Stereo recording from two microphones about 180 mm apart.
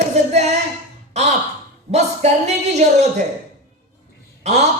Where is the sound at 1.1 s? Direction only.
40° right (ahead or behind).